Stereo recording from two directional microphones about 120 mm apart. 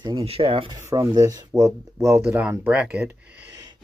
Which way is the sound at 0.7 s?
25° right (ahead or behind).